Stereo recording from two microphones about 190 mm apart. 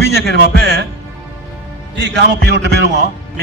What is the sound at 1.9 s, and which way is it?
A man's voice, 65° right (ahead or behind).